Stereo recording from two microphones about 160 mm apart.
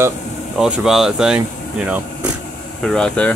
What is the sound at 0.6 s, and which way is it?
Speech, 5° right (ahead or behind).